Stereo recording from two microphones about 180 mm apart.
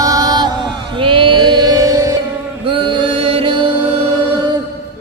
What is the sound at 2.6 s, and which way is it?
Music, 30° right (ahead or behind).